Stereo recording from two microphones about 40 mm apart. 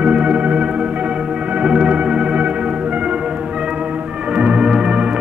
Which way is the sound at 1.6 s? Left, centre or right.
Centre.